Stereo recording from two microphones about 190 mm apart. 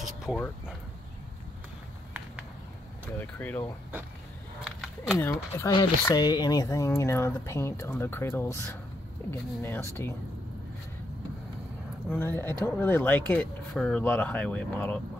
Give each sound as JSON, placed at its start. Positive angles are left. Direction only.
{"t": 0.0, "sound": "speech", "side_deg": 0}
{"t": 3.2, "sound": "speech", "side_deg": 10}
{"t": 4.6, "sound": "a sound", "side_deg": 0}
{"t": 5.2, "sound": "speech", "side_deg": 15}
{"t": 12.1, "sound": "speech", "side_deg": 10}